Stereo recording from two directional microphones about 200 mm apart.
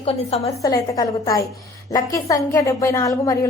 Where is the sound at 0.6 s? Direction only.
15° left (ahead or behind).